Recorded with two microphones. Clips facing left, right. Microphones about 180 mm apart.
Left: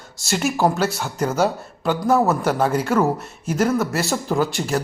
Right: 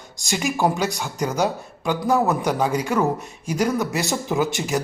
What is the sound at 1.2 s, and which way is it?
Speech, 15° right (ahead or behind).